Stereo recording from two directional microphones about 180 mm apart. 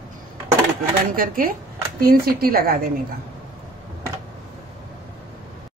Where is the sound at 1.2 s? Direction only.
50° right (ahead or behind).